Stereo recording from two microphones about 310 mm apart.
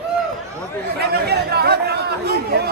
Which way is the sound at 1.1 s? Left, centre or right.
Right.